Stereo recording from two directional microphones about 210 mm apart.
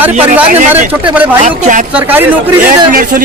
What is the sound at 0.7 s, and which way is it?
Speech, 10° right (ahead or behind).